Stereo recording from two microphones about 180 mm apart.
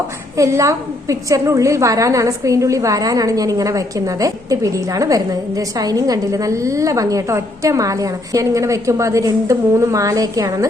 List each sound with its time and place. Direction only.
0.3 s a woman's voice: 15° right (ahead or behind)